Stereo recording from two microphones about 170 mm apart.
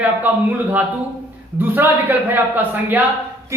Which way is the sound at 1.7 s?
10° right (ahead or behind).